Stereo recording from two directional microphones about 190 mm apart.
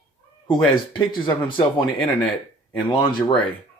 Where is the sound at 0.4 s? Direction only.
25° left (ahead or behind).